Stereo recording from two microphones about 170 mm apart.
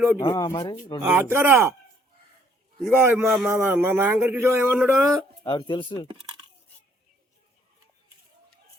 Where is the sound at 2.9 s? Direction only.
10° right (ahead or behind).